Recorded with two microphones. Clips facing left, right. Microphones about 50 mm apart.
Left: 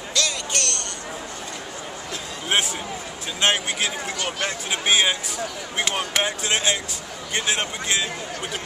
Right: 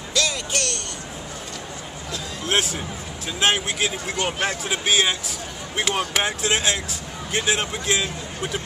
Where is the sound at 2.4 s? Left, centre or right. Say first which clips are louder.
Even; centre.